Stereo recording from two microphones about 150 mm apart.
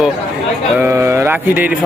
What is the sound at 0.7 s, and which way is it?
Speech, 15° right (ahead or behind).